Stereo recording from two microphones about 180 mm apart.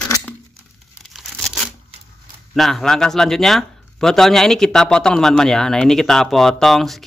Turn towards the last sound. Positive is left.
turn(degrees=0)  # may be behind; listen again after turning